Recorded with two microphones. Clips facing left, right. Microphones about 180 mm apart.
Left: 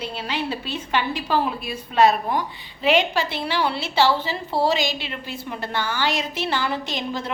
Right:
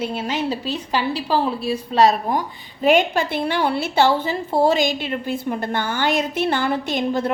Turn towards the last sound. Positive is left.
turn(degrees=-55)  # may be behind; listen again after turning